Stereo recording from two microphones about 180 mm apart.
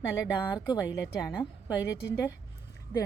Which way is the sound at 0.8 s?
80° left.